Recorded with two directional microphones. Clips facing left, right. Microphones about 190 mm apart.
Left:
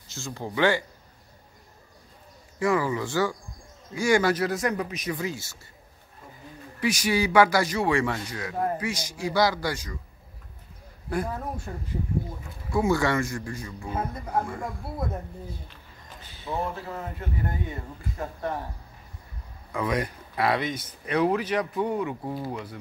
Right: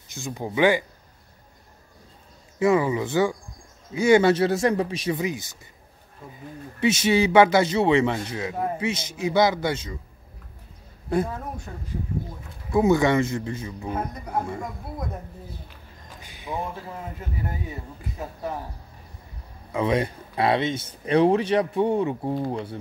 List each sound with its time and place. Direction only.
0.1 s speech: 15° right (ahead or behind)
2.6 s speech: 20° right (ahead or behind)
6.8 s speech: 25° right (ahead or behind)
12.7 s speech: 20° right (ahead or behind)
16.2 s a sound: 15° right (ahead or behind)
17.0 s speech: 10° right (ahead or behind)
19.7 s speech: 25° right (ahead or behind)